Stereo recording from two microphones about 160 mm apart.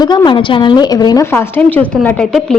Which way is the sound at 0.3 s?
30° left (ahead or behind).